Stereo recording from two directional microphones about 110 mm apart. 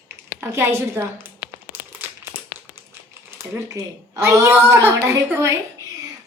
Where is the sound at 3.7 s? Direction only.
30° right (ahead or behind).